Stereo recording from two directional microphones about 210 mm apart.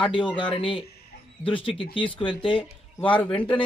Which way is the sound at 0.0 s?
25° left (ahead or behind).